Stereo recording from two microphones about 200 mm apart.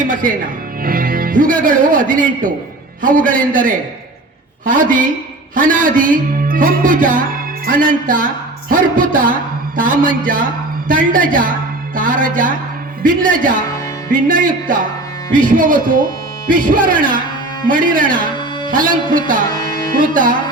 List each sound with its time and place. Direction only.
0.0 s a man's voice: 45° right (ahead or behind)
19.5 s music: 20° left (ahead or behind)
20.0 s a man's voice: 45° right (ahead or behind)